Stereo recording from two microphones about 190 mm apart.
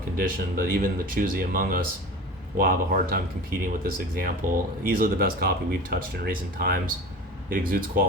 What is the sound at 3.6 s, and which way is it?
Speech, 50° right (ahead or behind).